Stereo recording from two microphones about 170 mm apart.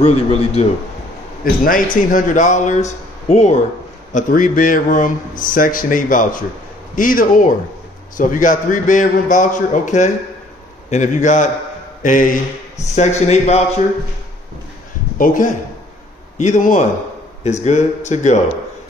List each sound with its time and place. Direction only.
0.0 s a man's voice: 35° left (ahead or behind)
1.4 s a man's voice: 55° left (ahead or behind)
15.1 s a man's voice: 50° left (ahead or behind)